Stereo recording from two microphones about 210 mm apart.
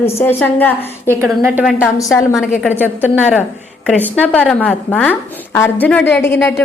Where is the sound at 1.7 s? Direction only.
15° left (ahead or behind).